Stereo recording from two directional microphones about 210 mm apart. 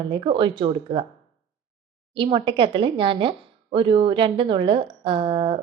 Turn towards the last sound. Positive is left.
turn(degrees=-25)  # may be behind; listen again after turning